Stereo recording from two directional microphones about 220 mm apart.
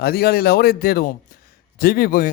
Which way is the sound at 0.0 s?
45° left (ahead or behind).